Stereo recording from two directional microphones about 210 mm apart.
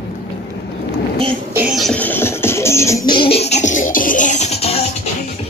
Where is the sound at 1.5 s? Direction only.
Centre (ahead or behind); by 4.8 s 30° left (ahead or behind).